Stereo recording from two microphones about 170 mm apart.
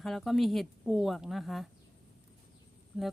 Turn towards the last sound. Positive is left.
turn(degrees=0)  # may be behind; listen again after turning